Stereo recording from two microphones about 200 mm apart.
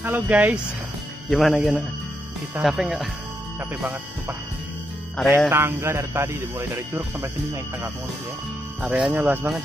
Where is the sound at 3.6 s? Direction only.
10° right (ahead or behind).